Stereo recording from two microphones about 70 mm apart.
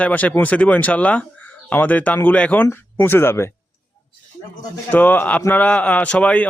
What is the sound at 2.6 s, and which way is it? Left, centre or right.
Speech, left.